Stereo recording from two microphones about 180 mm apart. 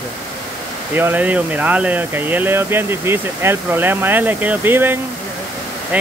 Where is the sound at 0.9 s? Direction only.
10° right (ahead or behind).